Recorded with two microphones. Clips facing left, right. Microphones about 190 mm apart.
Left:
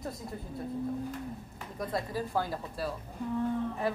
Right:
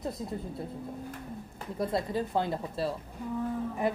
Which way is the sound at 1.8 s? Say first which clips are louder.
Right 4 dB; 25° right (ahead or behind).